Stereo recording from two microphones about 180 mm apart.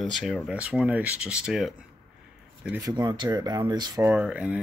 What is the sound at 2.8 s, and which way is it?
Speech, 25° right (ahead or behind).